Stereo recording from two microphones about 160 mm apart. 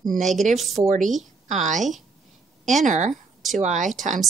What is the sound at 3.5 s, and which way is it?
Speech, 50° right (ahead or behind).